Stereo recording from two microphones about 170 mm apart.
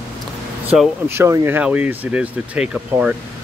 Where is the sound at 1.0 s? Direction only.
15° right (ahead or behind).